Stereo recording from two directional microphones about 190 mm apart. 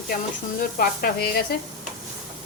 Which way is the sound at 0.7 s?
50° left (ahead or behind).